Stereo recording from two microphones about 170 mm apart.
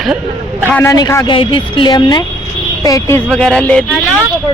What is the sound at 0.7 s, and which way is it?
Speech, 15° left (ahead or behind).